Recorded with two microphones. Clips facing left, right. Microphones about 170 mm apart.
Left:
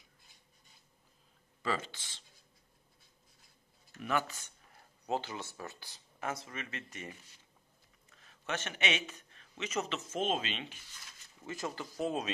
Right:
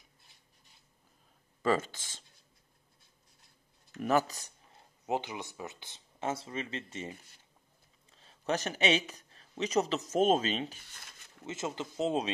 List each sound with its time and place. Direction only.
1.6 s speech: 45° right (ahead or behind)
4.0 s speech: 40° right (ahead or behind)
4.7 s speech: 20° right (ahead or behind)
8.1 s a sound: 30° right (ahead or behind)
9.1 s speech: 35° right (ahead or behind)
11.4 s speech: 20° right (ahead or behind)